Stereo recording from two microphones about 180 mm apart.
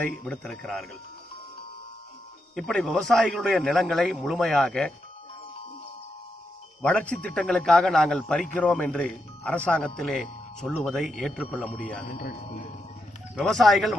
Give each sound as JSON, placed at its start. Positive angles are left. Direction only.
{"t": 0.2, "sound": "speech", "side_deg": 5}
{"t": 2.5, "sound": "speech", "side_deg": 5}
{"t": 6.8, "sound": "speech", "side_deg": 5}
{"t": 12.1, "sound": "speech", "side_deg": 60}
{"t": 13.4, "sound": "speech", "side_deg": 0}